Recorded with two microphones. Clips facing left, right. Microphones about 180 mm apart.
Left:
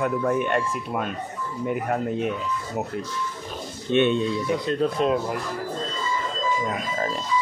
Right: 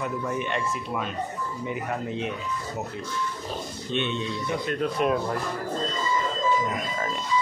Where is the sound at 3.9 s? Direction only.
55° left (ahead or behind).